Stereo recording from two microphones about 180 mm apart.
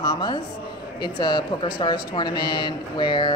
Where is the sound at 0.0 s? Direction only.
25° left (ahead or behind).